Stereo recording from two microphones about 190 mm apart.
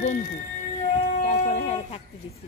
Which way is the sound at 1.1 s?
40° left (ahead or behind).